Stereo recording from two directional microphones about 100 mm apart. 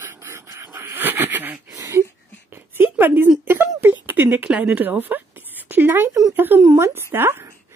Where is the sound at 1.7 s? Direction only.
30° right (ahead or behind).